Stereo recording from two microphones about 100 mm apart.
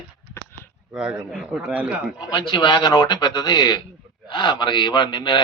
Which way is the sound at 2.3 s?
60° left (ahead or behind).